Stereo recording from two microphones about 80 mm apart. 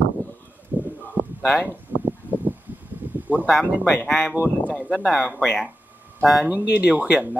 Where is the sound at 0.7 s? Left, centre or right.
Right.